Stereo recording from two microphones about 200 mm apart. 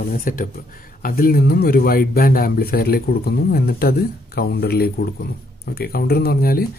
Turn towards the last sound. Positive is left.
turn(degrees=50)  # may be behind; listen again after turning